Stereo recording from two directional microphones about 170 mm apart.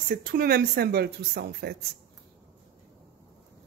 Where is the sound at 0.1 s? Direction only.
60° right (ahead or behind).